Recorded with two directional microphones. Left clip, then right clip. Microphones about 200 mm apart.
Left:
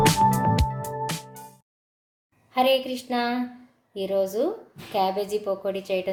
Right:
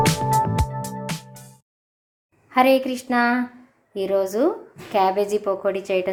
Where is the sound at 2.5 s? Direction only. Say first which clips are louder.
Right 4 dB; 20° right (ahead or behind).